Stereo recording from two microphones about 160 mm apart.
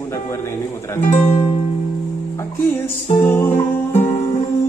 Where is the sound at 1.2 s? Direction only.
30° left (ahead or behind).